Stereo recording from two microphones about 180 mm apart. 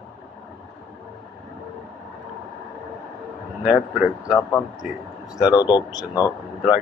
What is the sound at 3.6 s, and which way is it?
Speech, 5° right (ahead or behind).